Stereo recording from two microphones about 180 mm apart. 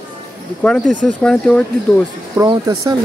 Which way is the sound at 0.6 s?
Centre (ahead or behind).